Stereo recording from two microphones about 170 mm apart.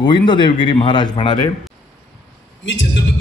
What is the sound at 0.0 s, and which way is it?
Speech, 25° left (ahead or behind).